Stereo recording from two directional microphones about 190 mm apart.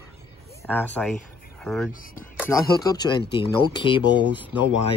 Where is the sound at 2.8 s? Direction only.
20° left (ahead or behind).